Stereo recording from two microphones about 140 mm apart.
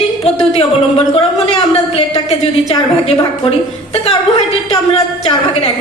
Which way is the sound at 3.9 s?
45° left (ahead or behind).